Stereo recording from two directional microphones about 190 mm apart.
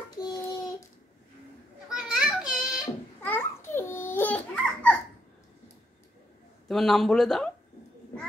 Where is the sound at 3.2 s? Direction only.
10° left (ahead or behind).